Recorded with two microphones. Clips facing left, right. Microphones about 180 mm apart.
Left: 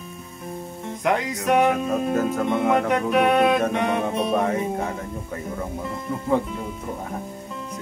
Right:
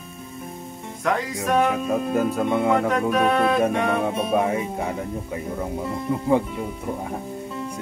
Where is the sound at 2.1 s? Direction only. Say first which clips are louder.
Right 1 dB; 15° right (ahead or behind).